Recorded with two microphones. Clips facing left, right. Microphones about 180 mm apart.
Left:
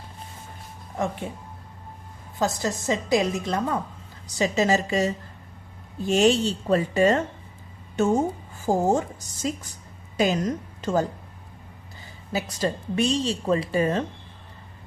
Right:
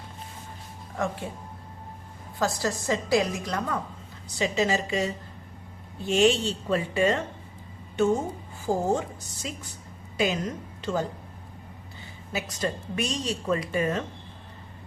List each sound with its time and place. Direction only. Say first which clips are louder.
0.9 s a woman's voice: left 2 dB; 20° left (ahead or behind)
2.4 s a woman's voice: left 2 dB; 20° left (ahead or behind)
4.4 s a woman's voice: left 3 dB; 40° left (ahead or behind)
12.3 s speech: left 3 dB; 35° left (ahead or behind)